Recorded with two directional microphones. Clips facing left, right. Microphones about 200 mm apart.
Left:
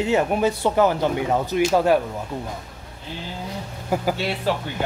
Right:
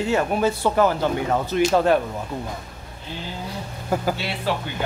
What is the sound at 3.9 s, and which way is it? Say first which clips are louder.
Speech: even; 15° left (ahead or behind).